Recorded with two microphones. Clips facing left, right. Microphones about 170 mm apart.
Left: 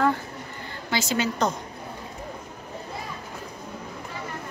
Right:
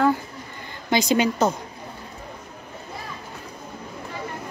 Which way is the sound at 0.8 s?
15° right (ahead or behind).